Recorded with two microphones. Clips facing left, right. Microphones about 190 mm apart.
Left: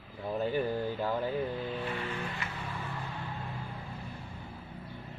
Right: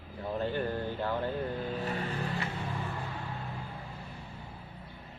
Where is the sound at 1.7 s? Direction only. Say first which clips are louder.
Right 1 dB; 40° right (ahead or behind).